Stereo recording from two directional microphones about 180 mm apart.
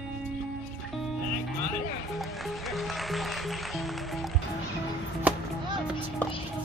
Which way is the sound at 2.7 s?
Centre (ahead or behind).